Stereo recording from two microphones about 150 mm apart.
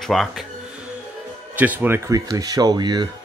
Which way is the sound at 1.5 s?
10° right (ahead or behind).